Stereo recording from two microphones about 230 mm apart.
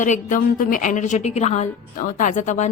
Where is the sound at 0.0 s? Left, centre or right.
Left.